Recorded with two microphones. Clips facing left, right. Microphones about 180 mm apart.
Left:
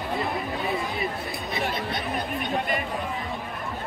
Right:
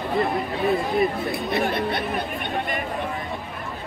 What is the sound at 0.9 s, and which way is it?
Speech, 55° right (ahead or behind).